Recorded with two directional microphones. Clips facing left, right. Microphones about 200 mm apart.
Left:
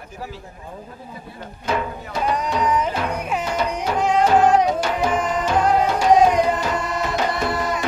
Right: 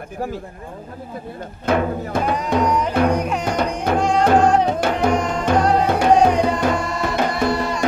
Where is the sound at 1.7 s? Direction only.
55° right (ahead or behind).